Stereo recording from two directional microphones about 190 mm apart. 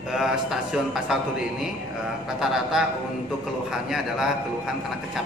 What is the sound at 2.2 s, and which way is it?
Speech, centre (ahead or behind).